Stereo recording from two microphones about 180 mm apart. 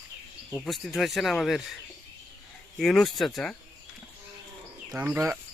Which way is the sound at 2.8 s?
Centre (ahead or behind).